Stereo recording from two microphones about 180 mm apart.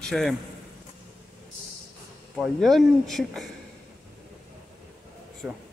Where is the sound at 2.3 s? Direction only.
Centre (ahead or behind).